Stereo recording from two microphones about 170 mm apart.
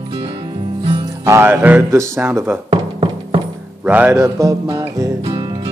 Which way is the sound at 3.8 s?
10° right (ahead or behind).